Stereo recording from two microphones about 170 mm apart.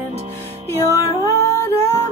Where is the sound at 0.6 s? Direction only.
15° left (ahead or behind).